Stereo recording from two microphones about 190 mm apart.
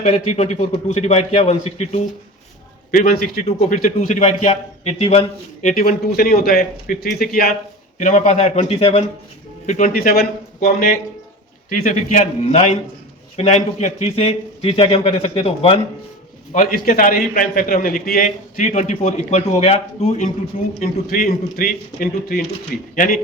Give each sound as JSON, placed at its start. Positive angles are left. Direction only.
{"t": 0.0, "sound": "a man's voice", "side_deg": 35}
{"t": 2.9, "sound": "a man's voice", "side_deg": 50}
{"t": 5.6, "sound": "a man's voice", "side_deg": 50}
{"t": 7.9, "sound": "a man's voice", "side_deg": 40}
{"t": 9.6, "sound": "a man's voice", "side_deg": 40}
{"t": 16.6, "sound": "a man's voice", "side_deg": 40}